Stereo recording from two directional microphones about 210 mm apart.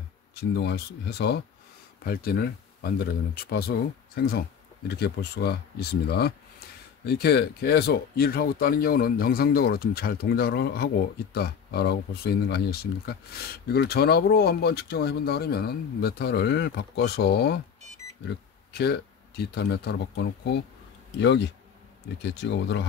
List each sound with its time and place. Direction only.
0.3 s speech: 50° left (ahead or behind)